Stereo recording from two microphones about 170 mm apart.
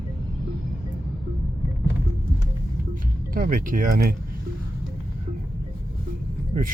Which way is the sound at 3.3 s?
55° right (ahead or behind).